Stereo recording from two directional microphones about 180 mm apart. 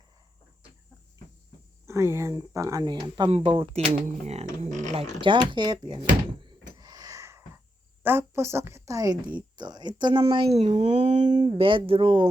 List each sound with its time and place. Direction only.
1.9 s speech: 15° right (ahead or behind); by 5.0 s 40° right (ahead or behind)
5.2 s speech: 25° right (ahead or behind)
6.4 s a sound: 20° right (ahead or behind)
8.0 s speech: 15° right (ahead or behind)
10.6 s speech: 40° right (ahead or behind)
11.3 s speech: 25° right (ahead or behind)